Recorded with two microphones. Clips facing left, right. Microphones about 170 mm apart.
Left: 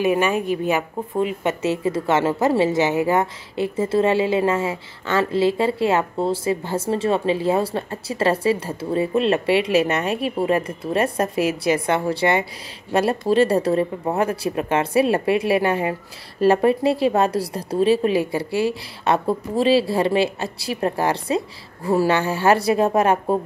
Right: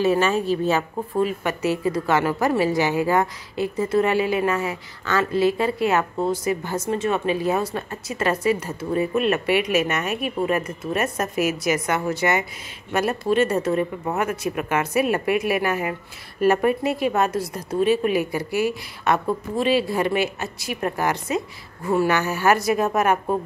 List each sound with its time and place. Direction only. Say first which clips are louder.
0.0 s speech: even; 15° left (ahead or behind); by 23.4 s 30° left (ahead or behind)